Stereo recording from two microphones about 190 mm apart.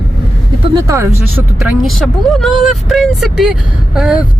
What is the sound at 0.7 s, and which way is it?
Speech, 15° right (ahead or behind).